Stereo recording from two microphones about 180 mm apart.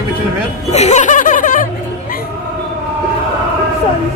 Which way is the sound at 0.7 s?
40° left (ahead or behind).